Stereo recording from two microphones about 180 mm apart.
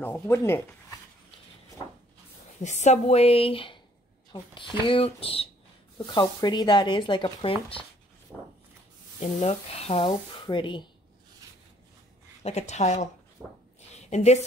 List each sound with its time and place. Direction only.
0.0 s speech: 10° left (ahead or behind)
2.6 s speech: 40° left (ahead or behind)
8.3 s walk: centre (ahead or behind)
9.4 s speech: 35° left (ahead or behind)
12.4 s speech: 40° left (ahead or behind)
13.4 s a sound: centre (ahead or behind)
13.9 s a sound: 40° left (ahead or behind)